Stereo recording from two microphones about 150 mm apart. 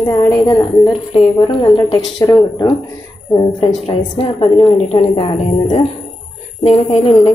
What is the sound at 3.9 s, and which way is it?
A woman's voice, 40° left (ahead or behind).